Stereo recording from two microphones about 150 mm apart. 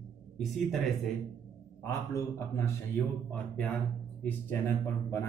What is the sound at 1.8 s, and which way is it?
A man's voice, 20° left (ahead or behind).